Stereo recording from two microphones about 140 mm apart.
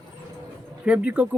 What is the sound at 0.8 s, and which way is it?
Speech, 10° right (ahead or behind).